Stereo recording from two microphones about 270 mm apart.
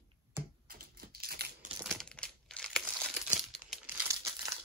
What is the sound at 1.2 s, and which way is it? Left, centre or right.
Typewriter, right.